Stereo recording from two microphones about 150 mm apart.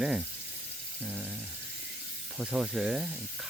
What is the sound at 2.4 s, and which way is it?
Speech, 5° right (ahead or behind).